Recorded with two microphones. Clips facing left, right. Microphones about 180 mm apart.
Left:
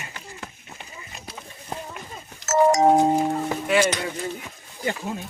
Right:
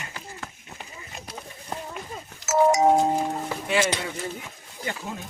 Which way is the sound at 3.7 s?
25° right (ahead or behind).